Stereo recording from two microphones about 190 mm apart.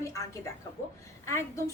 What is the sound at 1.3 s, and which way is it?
Speech, 15° left (ahead or behind).